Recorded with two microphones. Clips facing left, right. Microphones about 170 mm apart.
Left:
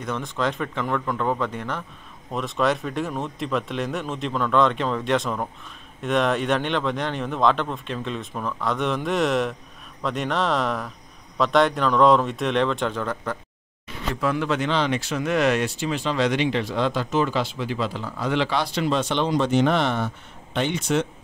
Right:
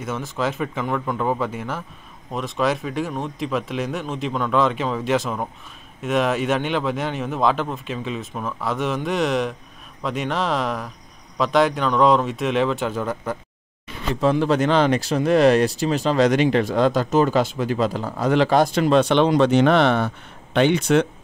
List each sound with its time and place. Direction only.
0.0 s speech: 5° right (ahead or behind)
14.2 s speech: 30° right (ahead or behind); by 21.1 s 60° right (ahead or behind)